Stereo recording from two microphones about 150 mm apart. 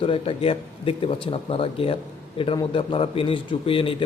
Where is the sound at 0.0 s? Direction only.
35° left (ahead or behind).